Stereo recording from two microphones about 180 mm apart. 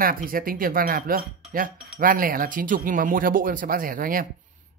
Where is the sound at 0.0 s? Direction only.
50° right (ahead or behind).